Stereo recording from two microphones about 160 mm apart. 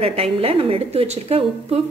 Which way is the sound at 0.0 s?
35° right (ahead or behind).